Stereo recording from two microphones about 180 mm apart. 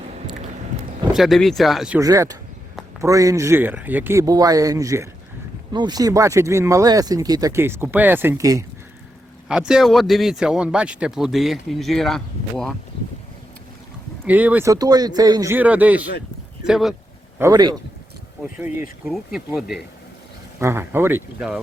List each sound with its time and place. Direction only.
1.1 s a man's voice: centre (ahead or behind)
2.0 s speech: 20° right (ahead or behind)
9.5 s a man's voice: 5° right (ahead or behind)
14.3 s a man's voice: 10° right (ahead or behind)
17.5 s speech: 25° right (ahead or behind)
18.5 s speech: 10° right (ahead or behind)
19.0 s a man's voice: centre (ahead or behind)
20.6 s speech: 15° right (ahead or behind)